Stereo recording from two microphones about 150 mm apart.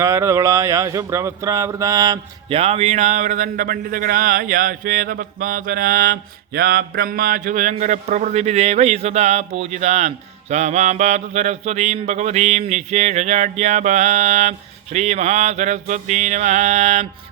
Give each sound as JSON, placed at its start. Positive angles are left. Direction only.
{"t": 0.0, "sound": "speech", "side_deg": -20}
{"t": 2.5, "sound": "speech", "side_deg": -40}
{"t": 10.5, "sound": "mantra", "side_deg": -50}